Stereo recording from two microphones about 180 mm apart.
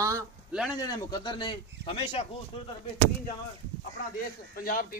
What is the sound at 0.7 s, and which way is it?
Speech, 20° left (ahead or behind).